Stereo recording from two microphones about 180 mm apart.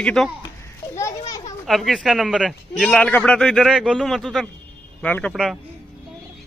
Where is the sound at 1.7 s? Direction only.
Centre (ahead or behind).